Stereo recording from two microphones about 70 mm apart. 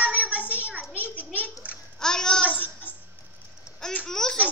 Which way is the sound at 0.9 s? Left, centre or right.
Left.